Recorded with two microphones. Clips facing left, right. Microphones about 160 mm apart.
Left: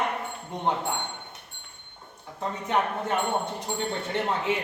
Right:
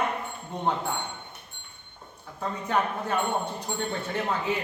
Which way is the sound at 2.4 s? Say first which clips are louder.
Left 1 dB; 20° left (ahead or behind).